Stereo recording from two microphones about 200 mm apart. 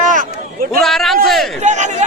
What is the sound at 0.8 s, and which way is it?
Speech, centre (ahead or behind).